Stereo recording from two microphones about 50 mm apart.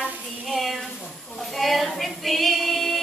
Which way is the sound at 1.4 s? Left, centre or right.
Centre.